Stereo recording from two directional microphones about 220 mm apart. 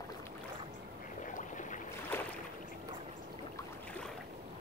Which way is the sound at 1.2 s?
35° left (ahead or behind).